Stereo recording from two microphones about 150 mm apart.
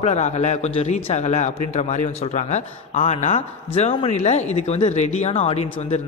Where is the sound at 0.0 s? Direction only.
45° left (ahead or behind).